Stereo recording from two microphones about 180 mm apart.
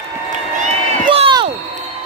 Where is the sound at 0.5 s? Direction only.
35° right (ahead or behind).